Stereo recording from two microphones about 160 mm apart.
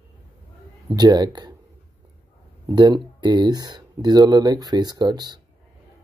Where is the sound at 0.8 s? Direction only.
25° right (ahead or behind).